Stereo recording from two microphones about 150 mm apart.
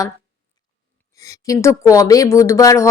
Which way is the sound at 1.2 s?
20° left (ahead or behind).